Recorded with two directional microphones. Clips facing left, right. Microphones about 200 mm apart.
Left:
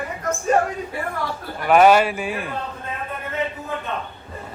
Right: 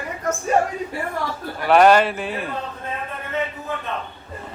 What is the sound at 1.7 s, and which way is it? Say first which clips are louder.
Speech: even; 5° left (ahead or behind).